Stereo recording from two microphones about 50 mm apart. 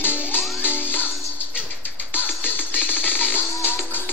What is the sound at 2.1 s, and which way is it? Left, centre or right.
Music, left.